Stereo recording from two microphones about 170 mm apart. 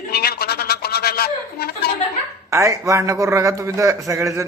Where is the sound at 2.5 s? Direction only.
20° right (ahead or behind).